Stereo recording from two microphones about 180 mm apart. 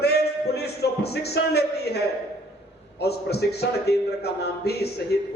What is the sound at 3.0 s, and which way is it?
A man's voice, 65° left (ahead or behind).